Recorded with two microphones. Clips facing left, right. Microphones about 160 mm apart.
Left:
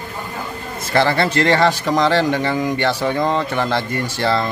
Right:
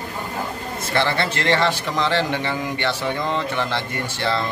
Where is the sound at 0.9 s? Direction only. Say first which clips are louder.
Left 6 dB; 40° left (ahead or behind).